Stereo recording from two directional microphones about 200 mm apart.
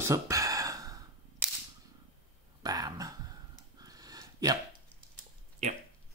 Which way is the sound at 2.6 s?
20° right (ahead or behind).